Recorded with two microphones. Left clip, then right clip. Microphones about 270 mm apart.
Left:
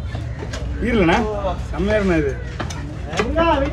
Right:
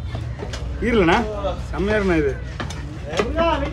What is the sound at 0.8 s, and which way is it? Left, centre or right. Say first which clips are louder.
Speech: even; centre.